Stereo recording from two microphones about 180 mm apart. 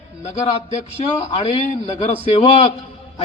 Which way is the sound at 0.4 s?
30° left (ahead or behind).